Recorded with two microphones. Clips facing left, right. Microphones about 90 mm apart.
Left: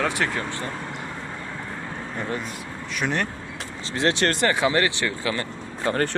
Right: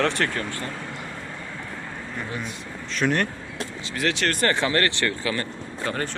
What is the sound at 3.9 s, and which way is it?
Speech, 30° left (ahead or behind).